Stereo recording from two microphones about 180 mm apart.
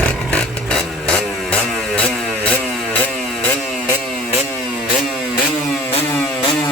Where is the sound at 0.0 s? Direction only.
5° left (ahead or behind).